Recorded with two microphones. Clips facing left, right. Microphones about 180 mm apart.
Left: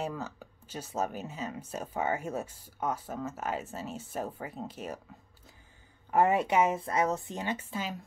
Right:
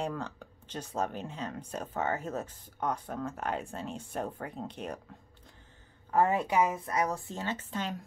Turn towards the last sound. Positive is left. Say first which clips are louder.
# even
turn(degrees=5)  # may be behind; listen again after turning